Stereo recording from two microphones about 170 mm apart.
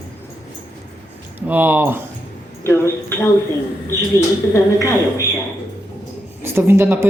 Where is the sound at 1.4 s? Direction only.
10° right (ahead or behind).